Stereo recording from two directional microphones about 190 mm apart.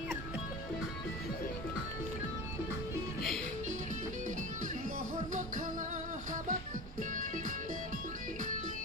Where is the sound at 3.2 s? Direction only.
Centre (ahead or behind).